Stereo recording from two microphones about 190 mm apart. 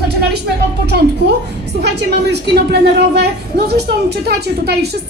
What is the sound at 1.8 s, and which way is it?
A woman's voice, 60° right (ahead or behind).